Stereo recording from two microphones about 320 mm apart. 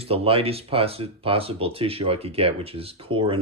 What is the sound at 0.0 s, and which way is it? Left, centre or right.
Speech, centre.